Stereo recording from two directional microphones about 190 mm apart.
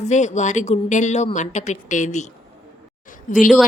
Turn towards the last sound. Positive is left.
turn(degrees=45)  # may be behind; listen again after turning